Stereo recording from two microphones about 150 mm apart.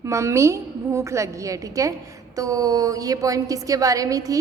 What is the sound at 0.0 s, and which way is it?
A woman's voice, 20° right (ahead or behind).